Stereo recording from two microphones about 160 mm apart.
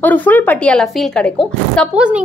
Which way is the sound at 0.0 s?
10° left (ahead or behind).